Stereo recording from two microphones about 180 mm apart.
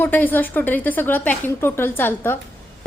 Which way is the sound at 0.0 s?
10° left (ahead or behind).